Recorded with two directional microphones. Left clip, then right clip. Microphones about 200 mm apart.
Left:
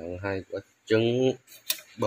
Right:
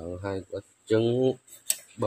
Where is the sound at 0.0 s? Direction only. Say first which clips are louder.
Left 1 dB; centre (ahead or behind).